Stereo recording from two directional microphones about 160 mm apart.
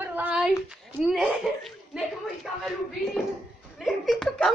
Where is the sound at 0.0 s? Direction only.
10° right (ahead or behind).